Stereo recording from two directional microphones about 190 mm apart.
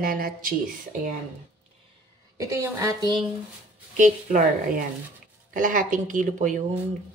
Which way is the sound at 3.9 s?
40° right (ahead or behind).